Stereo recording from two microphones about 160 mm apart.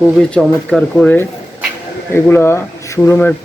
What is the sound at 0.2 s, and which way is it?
Speech, 5° left (ahead or behind).